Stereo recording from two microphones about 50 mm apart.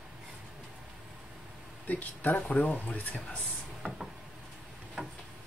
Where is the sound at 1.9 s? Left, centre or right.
Left.